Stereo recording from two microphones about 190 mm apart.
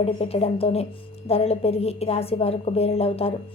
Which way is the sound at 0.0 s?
30° left (ahead or behind).